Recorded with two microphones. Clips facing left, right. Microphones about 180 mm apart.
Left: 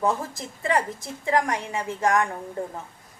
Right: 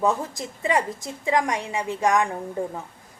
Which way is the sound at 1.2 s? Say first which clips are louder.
Right 1 dB; 15° right (ahead or behind).